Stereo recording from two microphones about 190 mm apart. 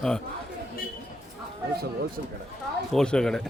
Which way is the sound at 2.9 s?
5° left (ahead or behind).